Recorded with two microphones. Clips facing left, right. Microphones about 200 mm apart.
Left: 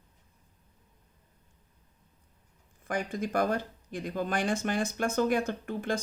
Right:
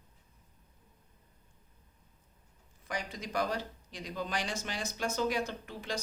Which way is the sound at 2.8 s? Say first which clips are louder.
Left 7 dB; 50° left (ahead or behind).